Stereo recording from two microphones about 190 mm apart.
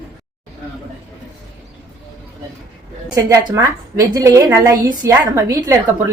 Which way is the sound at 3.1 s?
20° right (ahead or behind).